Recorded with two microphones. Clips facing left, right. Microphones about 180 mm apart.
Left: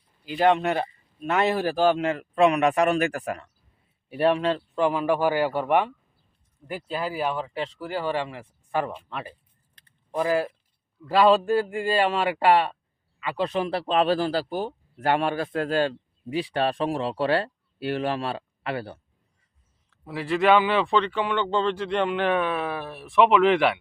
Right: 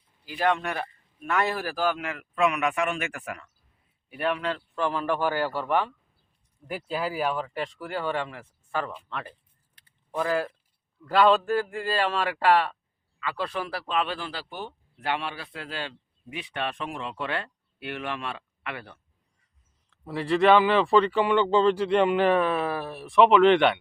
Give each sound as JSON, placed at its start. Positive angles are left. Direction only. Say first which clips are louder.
{"t": 0.3, "sound": "speech", "louder": "left 5 dB", "side_deg": 25}
{"t": 6.7, "sound": "speech", "louder": "even", "side_deg": -5}
{"t": 19.9, "sound": "speech", "louder": "right 1 dB", "side_deg": 0}